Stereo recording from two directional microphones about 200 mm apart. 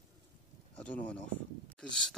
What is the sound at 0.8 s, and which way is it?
Speech, 5° left (ahead or behind).